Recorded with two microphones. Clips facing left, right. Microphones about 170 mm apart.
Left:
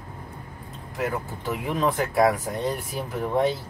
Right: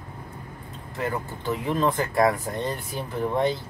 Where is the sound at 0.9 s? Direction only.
5° left (ahead or behind).